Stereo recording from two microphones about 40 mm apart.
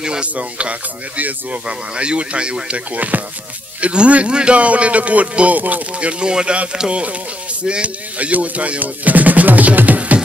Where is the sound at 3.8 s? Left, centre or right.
Right.